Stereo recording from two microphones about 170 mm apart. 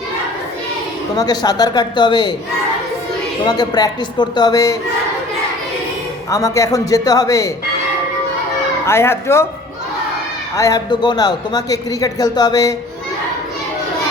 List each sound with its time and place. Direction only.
1.1 s a man's voice: 20° left (ahead or behind)
3.4 s a man's voice: 25° left (ahead or behind)
6.3 s a man's voice: 20° left (ahead or behind)
8.9 s speech: 15° left (ahead or behind)
10.6 s a man's voice: 20° left (ahead or behind)